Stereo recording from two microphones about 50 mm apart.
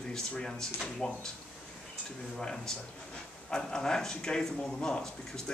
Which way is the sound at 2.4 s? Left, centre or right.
Centre.